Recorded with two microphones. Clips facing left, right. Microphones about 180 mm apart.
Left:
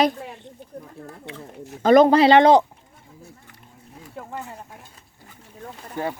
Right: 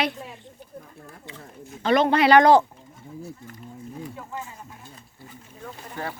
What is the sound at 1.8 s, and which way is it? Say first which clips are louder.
Speech: left 6 dB; 45° left (ahead or behind).